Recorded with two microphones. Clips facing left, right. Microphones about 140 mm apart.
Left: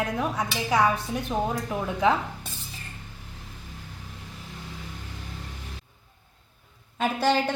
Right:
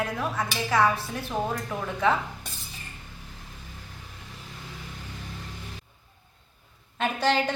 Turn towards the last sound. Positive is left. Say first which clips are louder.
# left 1 dB
turn(degrees=10)  # may be behind; listen again after turning